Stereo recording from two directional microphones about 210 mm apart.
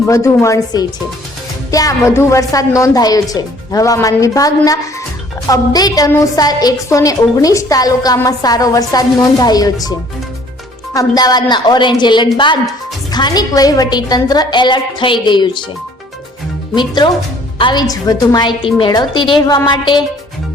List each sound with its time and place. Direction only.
0.0 s a woman's voice: 15° left (ahead or behind)
10.9 s a woman's voice: 20° left (ahead or behind)
16.7 s a woman's voice: 20° left (ahead or behind)